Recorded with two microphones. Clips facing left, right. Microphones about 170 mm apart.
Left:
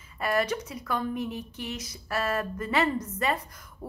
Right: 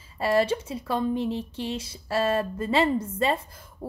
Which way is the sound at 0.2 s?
30° right (ahead or behind).